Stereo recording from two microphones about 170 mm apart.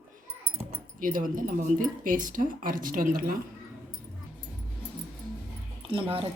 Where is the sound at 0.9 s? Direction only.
55° right (ahead or behind).